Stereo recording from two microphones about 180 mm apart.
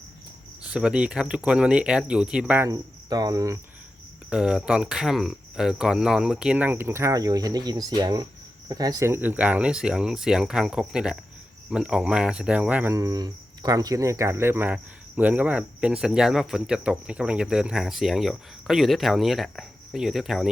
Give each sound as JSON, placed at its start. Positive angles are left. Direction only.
{"t": 0.7, "sound": "speech", "side_deg": -5}
{"t": 2.6, "sound": "cricket", "side_deg": -20}
{"t": 4.3, "sound": "speech", "side_deg": -5}